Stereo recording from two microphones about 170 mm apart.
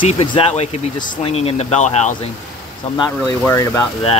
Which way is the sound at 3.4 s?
15° left (ahead or behind).